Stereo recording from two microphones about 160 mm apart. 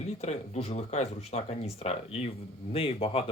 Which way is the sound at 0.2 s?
45° left (ahead or behind).